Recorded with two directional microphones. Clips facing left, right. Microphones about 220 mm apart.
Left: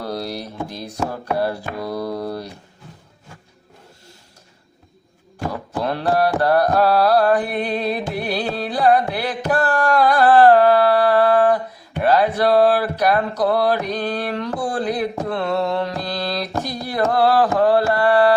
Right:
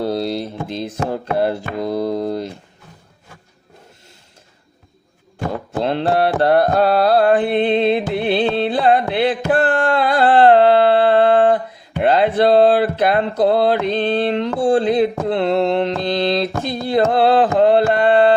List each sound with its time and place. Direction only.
0.0 s music: 25° right (ahead or behind)
5.5 s carnatic music: 25° right (ahead or behind)
12.0 s a sound: 25° right (ahead or behind)